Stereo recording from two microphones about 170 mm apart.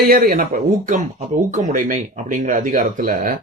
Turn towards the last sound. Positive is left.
turn(degrees=-55)  # may be behind; listen again after turning